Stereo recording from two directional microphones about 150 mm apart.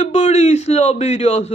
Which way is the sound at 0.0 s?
45° left (ahead or behind).